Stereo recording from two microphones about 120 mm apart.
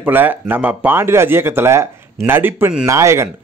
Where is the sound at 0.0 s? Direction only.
15° right (ahead or behind).